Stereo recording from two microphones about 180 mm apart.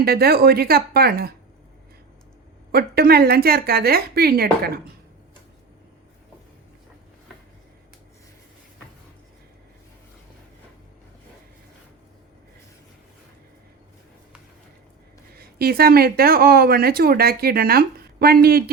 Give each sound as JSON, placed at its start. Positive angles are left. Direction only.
{"t": 0.0, "sound": "speech", "side_deg": -60}
{"t": 2.7, "sound": "speech", "side_deg": -60}
{"t": 15.4, "sound": "speech", "side_deg": -60}